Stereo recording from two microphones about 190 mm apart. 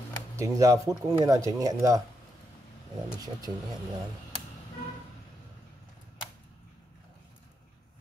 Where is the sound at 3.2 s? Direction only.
20° right (ahead or behind).